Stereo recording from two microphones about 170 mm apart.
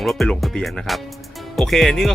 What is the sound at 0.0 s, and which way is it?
Speech, centre (ahead or behind).